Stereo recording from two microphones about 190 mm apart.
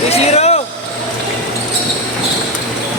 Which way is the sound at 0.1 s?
35° left (ahead or behind).